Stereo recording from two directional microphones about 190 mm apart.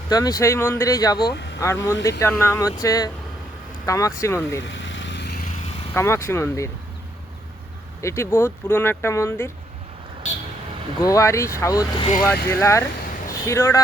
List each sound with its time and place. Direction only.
0.1 s speech: 20° left (ahead or behind)
1.2 s speech: 60° left (ahead or behind)
1.5 s speech: 15° left (ahead or behind)
4.7 s vehicle: 75° left (ahead or behind); by 5.5 s 60° left (ahead or behind)
5.9 s speech: 15° left (ahead or behind)
8.0 s speech: 15° left (ahead or behind)
11.0 s speech: 15° left (ahead or behind)